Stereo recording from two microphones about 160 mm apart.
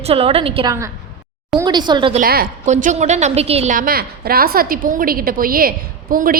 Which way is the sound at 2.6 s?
50° right (ahead or behind).